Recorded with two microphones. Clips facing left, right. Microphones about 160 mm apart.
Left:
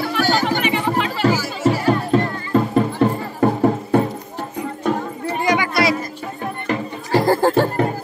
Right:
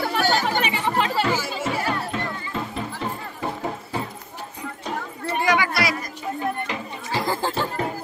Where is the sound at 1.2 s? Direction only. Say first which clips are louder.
Left 7 dB; 40° left (ahead or behind); by 4.9 s 55° left (ahead or behind).